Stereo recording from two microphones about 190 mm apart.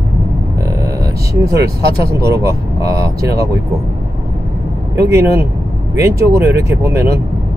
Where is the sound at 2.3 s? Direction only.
20° right (ahead or behind).